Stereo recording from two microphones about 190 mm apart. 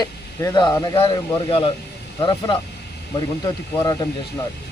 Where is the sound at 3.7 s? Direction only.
20° left (ahead or behind).